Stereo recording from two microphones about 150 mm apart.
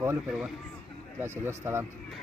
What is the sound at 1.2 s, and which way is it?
Speech, 15° right (ahead or behind).